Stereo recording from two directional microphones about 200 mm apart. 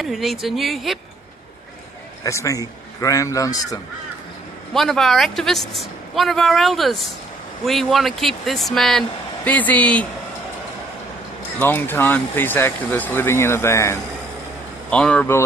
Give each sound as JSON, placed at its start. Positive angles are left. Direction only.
{"t": 0.0, "sound": "speech", "side_deg": 0}
{"t": 2.2, "sound": "speech", "side_deg": 15}
{"t": 4.7, "sound": "speech", "side_deg": 0}
{"t": 11.6, "sound": "speech", "side_deg": 10}